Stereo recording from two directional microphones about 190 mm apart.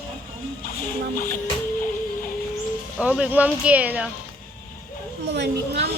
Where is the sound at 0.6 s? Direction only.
50° left (ahead or behind).